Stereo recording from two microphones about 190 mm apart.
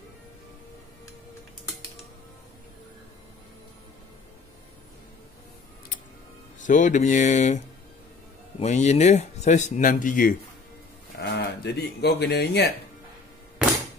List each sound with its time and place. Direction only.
6.6 s speech: 40° left (ahead or behind)
11.1 s speech: 60° left (ahead or behind)